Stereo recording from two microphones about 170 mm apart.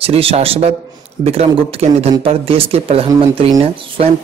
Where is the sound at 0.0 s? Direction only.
35° right (ahead or behind).